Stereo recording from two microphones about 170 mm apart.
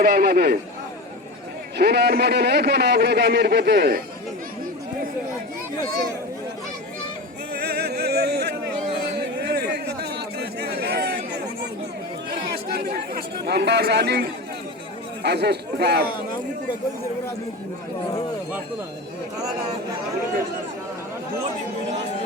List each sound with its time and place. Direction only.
0.0 s speech: 65° right (ahead or behind)
1.8 s speech: 75° right (ahead or behind)
7.5 s a sound: 70° right (ahead or behind)
12.5 s speech: 65° right (ahead or behind)